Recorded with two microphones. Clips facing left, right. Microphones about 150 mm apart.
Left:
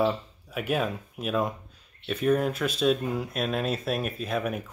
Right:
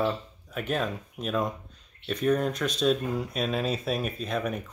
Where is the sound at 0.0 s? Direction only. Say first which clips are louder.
Left 2 dB; 10° left (ahead or behind).